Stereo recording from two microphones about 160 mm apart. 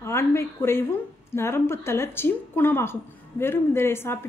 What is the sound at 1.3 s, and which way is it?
A woman's voice, 15° left (ahead or behind).